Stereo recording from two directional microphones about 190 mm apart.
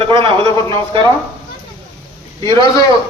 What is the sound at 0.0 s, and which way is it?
A man's voice, 25° right (ahead or behind).